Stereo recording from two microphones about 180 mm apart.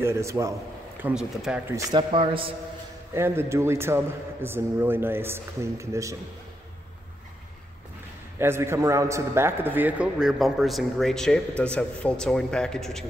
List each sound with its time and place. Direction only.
0.0 s a man's voice: 15° right (ahead or behind)
1.0 s a man's voice: 5° right (ahead or behind)
1.8 s speech: 25° right (ahead or behind)
3.2 s a man's voice: 15° right (ahead or behind)
8.4 s a man's voice: 15° right (ahead or behind); by 13.0 s 5° left (ahead or behind)